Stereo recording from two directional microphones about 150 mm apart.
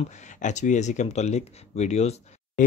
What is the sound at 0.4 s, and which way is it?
Speech, 55° left (ahead or behind).